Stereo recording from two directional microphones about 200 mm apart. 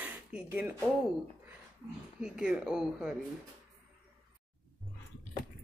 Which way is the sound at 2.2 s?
5° right (ahead or behind).